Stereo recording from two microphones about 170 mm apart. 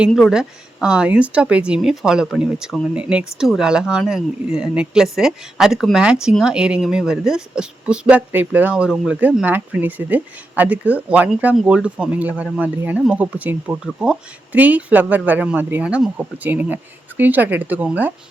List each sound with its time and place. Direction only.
0.0 s a woman's voice: centre (ahead or behind)